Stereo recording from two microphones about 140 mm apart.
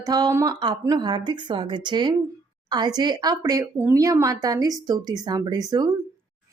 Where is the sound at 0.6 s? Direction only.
30° right (ahead or behind).